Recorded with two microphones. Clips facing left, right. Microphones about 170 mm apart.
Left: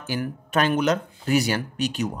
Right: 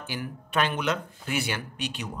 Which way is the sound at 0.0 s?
45° left (ahead or behind).